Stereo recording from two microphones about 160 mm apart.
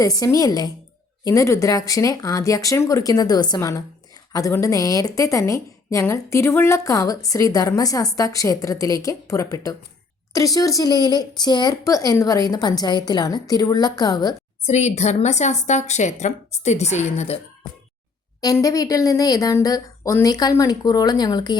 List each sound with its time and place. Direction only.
0.0 s a woman's voice: 20° left (ahead or behind)
14.7 s speech: 45° left (ahead or behind)
18.3 s a woman's voice: 20° left (ahead or behind)